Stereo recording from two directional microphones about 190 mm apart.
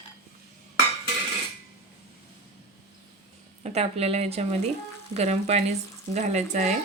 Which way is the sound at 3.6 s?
35° right (ahead or behind).